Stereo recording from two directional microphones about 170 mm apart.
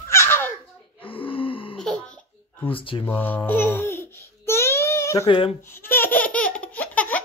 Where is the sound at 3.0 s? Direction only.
10° left (ahead or behind).